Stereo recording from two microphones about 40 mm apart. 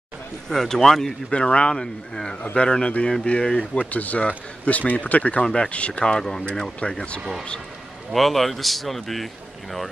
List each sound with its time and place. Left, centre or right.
0.5 s speech: centre
1.3 s speech: left
3.9 s speech: left
6.1 s speech: centre
7.2 s speech: centre
8.1 s a man's voice: centre